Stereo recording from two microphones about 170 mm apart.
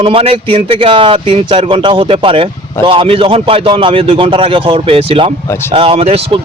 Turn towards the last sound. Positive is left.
turn(degrees=-35)  # may be behind; listen again after turning